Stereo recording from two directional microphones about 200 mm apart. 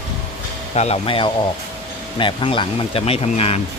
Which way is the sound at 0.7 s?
30° left (ahead or behind).